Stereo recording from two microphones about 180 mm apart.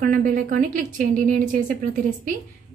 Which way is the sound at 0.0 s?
45° right (ahead or behind).